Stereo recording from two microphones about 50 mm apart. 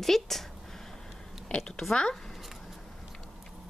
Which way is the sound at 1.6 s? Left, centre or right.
Centre.